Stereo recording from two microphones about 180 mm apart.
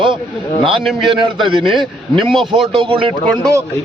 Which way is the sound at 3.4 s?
15° right (ahead or behind).